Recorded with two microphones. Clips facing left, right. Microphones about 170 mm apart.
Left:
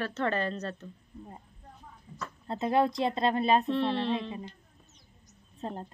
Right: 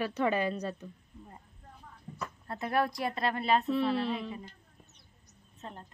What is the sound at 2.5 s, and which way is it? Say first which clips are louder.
Speech: left 4 dB; 20° left (ahead or behind).